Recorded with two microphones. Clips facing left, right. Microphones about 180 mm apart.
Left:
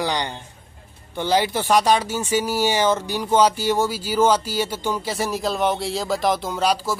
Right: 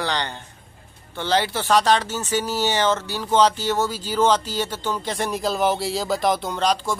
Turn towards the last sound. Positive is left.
turn(degrees=5)  # may be behind; listen again after turning